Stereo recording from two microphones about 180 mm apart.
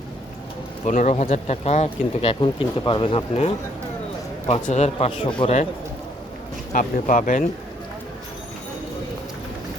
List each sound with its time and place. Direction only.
0.9 s speech: 45° left (ahead or behind)
6.7 s speech: 50° left (ahead or behind)